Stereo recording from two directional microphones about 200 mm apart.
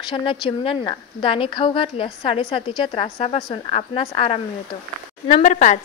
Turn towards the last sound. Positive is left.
turn(degrees=35)  # may be behind; listen again after turning